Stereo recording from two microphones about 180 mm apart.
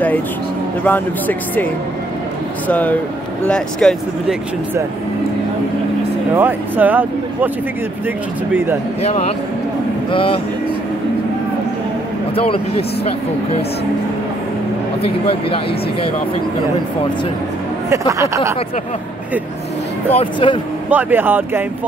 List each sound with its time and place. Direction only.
0.8 s speech: 10° left (ahead or behind)
2.7 s speech: 10° left (ahead or behind)
6.3 s speech: 10° right (ahead or behind)
9.0 s speech: 35° left (ahead or behind)
12.4 s speech: 30° left (ahead or behind)
15.0 s speech: 30° left (ahead or behind)
17.8 s speech: 15° right (ahead or behind)
20.2 s speech: 30° left (ahead or behind)
20.9 s speech: 10° right (ahead or behind)